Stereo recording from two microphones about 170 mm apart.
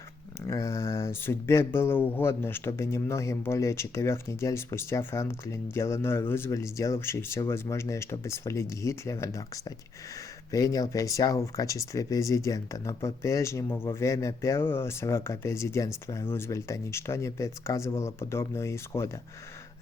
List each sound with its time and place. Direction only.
0.4 s speech: 15° left (ahead or behind)